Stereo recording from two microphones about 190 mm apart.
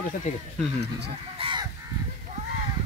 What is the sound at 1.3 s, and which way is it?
Speech, 25° right (ahead or behind).